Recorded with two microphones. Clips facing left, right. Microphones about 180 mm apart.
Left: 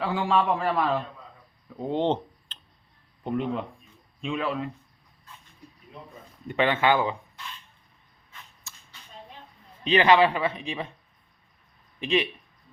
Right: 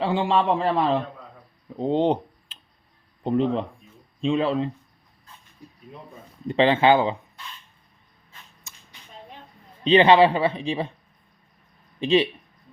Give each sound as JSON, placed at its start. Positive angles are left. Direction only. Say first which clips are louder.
{"t": 0.0, "sound": "a man's voice", "louder": "right 3 dB", "side_deg": -25}
{"t": 3.2, "sound": "a man's voice", "louder": "right 6 dB", "side_deg": -30}
{"t": 6.5, "sound": "a man's voice", "louder": "right 5 dB", "side_deg": -30}
{"t": 8.7, "sound": "a sound", "louder": "even", "side_deg": -20}
{"t": 9.8, "sound": "speech", "louder": "right 4 dB", "side_deg": -30}
{"t": 11.9, "sound": "speech", "louder": "right 6 dB", "side_deg": -30}